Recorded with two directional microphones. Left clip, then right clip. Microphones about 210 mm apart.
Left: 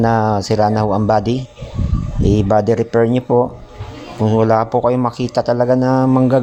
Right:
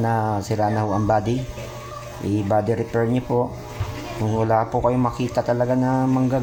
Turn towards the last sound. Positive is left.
turn(degrees=40)  # may be behind; listen again after turning